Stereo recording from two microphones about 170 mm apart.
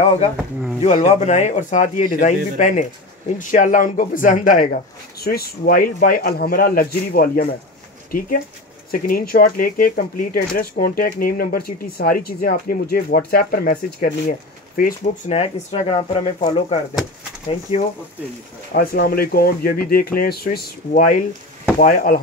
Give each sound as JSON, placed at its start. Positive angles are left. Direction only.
{"t": 0.8, "sound": "a man's voice", "side_deg": 40}
{"t": 15.3, "sound": "speech", "side_deg": 40}
{"t": 18.7, "sound": "speech", "side_deg": 60}